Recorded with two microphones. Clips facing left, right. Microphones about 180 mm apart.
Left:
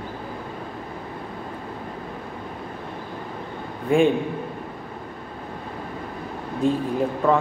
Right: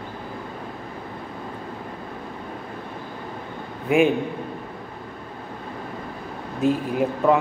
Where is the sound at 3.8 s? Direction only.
5° right (ahead or behind).